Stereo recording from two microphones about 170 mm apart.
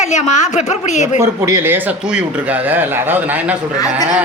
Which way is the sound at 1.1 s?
15° right (ahead or behind).